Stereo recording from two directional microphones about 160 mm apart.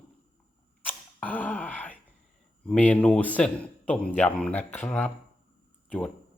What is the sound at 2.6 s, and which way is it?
Speech, 10° left (ahead or behind).